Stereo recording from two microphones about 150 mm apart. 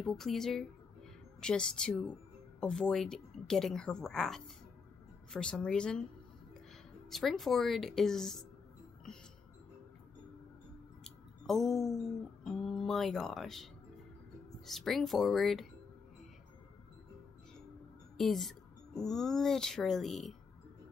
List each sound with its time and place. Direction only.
0.0 s a woman's voice: centre (ahead or behind)
7.1 s a woman's voice: centre (ahead or behind)
11.1 s a sound: centre (ahead or behind)
12.4 s a woman's voice: centre (ahead or behind)
14.7 s a woman's voice: centre (ahead or behind)
18.1 s a woman's voice: centre (ahead or behind)